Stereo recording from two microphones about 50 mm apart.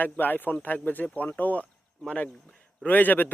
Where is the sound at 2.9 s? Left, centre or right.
Left.